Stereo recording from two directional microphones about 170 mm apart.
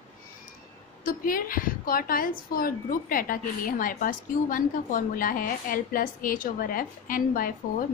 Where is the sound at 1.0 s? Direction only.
55° left (ahead or behind).